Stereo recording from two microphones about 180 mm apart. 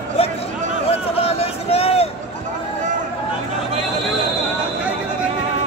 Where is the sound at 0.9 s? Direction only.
35° left (ahead or behind).